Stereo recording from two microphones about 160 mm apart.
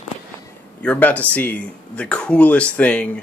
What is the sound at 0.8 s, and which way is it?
Speech, 10° left (ahead or behind).